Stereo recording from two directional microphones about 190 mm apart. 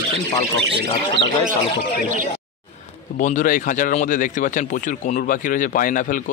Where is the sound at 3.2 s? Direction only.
45° left (ahead or behind).